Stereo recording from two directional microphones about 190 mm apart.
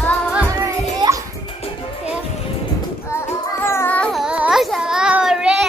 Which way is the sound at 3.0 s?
15° left (ahead or behind).